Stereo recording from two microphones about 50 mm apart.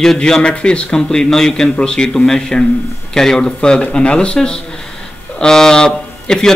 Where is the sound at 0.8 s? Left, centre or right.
Centre.